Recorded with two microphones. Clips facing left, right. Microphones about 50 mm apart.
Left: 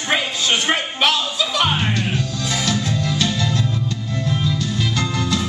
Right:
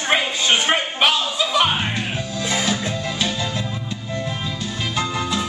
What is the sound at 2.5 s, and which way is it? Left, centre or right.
Music, right.